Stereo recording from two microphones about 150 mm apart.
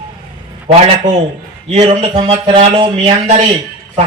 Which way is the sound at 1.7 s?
40° right (ahead or behind).